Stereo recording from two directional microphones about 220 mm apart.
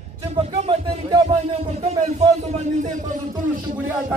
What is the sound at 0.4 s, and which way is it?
Music, 25° right (ahead or behind).